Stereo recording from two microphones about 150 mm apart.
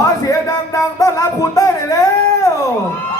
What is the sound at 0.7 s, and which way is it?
Speech, 25° left (ahead or behind).